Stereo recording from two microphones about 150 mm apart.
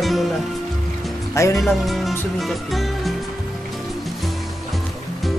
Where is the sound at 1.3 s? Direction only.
20° left (ahead or behind).